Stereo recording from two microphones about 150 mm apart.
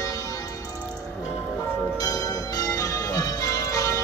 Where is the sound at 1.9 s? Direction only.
25° left (ahead or behind).